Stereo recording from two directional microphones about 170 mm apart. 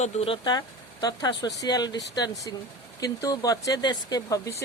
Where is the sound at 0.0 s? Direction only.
40° left (ahead or behind).